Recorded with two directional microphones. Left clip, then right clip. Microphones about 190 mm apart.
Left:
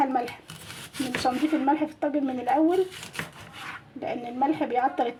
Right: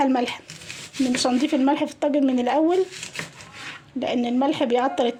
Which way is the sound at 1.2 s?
50° right (ahead or behind).